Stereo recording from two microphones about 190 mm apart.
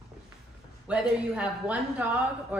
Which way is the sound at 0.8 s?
5° right (ahead or behind).